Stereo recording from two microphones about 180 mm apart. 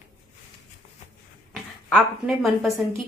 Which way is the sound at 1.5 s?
5° left (ahead or behind).